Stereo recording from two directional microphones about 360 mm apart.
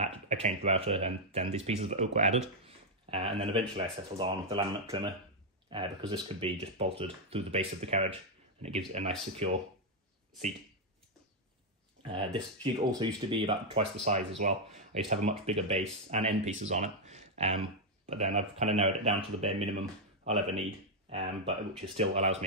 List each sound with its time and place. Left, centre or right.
0.0 s speech: centre
12.0 s speech: centre
21.1 s speech: centre